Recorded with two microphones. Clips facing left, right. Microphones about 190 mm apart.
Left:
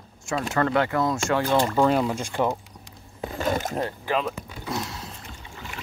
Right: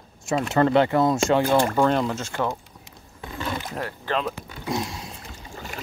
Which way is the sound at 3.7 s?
20° left (ahead or behind).